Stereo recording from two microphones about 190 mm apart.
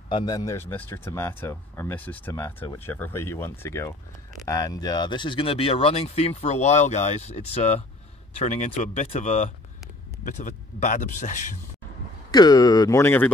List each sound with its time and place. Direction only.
0.1 s speech: 20° left (ahead or behind); by 11.5 s 40° left (ahead or behind)
12.3 s speech: 20° left (ahead or behind)